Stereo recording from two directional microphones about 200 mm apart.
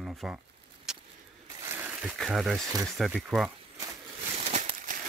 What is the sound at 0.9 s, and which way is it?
Vehicle, 5° right (ahead or behind).